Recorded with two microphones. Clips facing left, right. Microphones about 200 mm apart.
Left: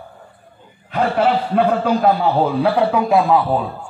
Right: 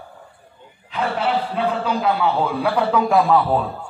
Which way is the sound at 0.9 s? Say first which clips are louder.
Left 5 dB; 55° left (ahead or behind).